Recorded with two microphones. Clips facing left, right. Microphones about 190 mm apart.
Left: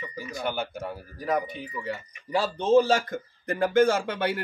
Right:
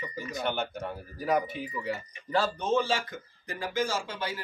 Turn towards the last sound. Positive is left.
turn(degrees=60)  # may be behind; listen again after turning